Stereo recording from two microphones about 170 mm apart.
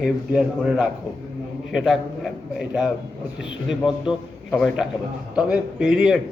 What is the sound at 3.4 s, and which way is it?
Speech, 90° left.